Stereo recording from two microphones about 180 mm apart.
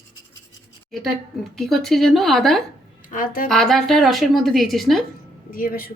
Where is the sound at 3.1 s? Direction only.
50° left (ahead or behind).